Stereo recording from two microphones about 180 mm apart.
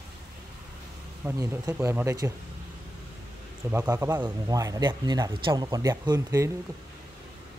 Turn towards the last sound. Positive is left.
turn(degrees=-20)  # may be behind; listen again after turning